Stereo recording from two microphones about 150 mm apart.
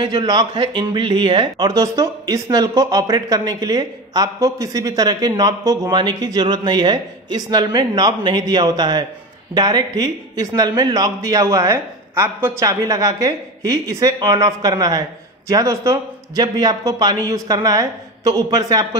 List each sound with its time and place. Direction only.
0.0 s speech: 30° right (ahead or behind)